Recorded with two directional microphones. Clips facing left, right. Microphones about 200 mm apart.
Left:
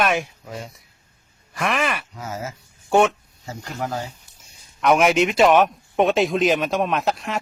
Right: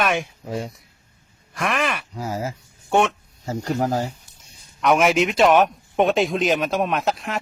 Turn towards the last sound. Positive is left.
turn(degrees=0)  # may be behind; listen again after turning